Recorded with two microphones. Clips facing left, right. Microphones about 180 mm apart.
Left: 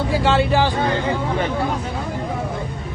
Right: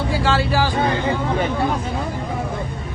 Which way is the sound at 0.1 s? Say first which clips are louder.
Left 3 dB; 25° left (ahead or behind).